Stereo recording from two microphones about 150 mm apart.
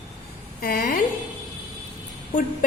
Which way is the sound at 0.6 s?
70° left (ahead or behind).